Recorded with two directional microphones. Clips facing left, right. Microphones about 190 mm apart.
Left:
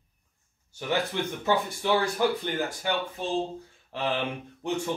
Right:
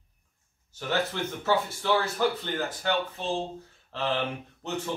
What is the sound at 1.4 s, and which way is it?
Speech, 15° left (ahead or behind).